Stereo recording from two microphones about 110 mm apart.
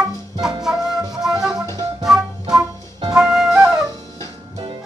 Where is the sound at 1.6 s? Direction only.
25° left (ahead or behind).